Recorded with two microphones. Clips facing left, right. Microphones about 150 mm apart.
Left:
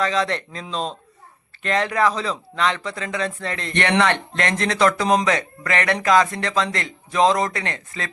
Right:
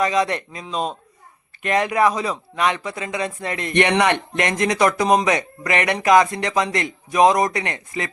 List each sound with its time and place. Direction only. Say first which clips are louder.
0.0 s speech: right 2 dB; 15° right (ahead or behind)